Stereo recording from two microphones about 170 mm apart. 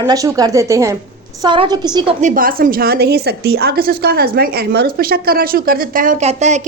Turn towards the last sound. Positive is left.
turn(degrees=-40)  # may be behind; listen again after turning